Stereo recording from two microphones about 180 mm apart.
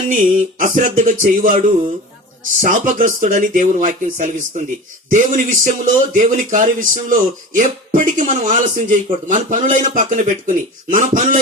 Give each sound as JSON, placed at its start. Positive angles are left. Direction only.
{"t": 0.1, "sound": "speech", "side_deg": -45}